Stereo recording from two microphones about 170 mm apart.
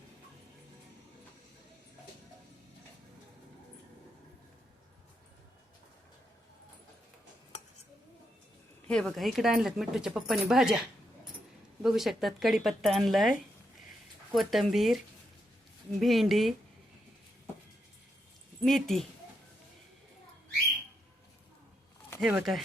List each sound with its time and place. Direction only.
8.9 s speech: 5° left (ahead or behind)
11.8 s speech: centre (ahead or behind)
14.3 s speech: centre (ahead or behind)
18.6 s speech: centre (ahead or behind)
22.2 s speech: centre (ahead or behind)